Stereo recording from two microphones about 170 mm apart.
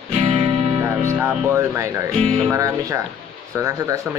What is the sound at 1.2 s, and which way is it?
Speech, 15° right (ahead or behind).